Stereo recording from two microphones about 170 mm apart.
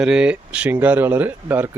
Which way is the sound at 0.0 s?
5° right (ahead or behind).